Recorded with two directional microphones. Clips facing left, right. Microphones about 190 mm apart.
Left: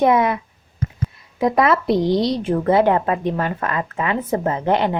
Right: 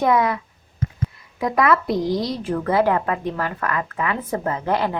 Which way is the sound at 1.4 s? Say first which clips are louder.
Left 2 dB; 25° left (ahead or behind).